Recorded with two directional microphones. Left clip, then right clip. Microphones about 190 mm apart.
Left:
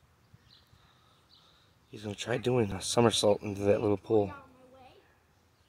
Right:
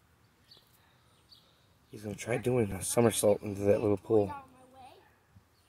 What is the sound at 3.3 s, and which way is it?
Speech, 15° left (ahead or behind).